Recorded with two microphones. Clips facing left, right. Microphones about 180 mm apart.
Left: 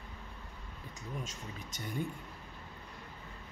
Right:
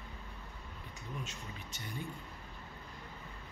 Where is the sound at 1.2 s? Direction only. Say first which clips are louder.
Left 2 dB; 45° left (ahead or behind).